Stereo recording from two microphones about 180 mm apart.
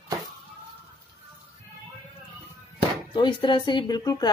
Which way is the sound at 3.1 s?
25° left (ahead or behind).